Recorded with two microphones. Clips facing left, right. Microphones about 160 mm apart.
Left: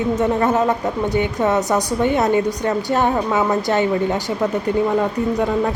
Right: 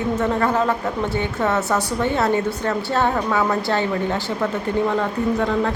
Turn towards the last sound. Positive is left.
turn(degrees=10)  # may be behind; listen again after turning